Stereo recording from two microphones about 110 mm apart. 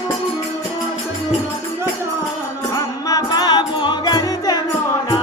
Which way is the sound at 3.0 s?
35° left (ahead or behind).